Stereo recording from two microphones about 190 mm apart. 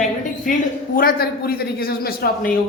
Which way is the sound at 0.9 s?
50° left (ahead or behind).